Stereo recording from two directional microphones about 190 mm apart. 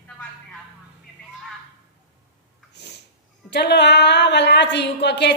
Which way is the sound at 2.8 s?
60° left (ahead or behind).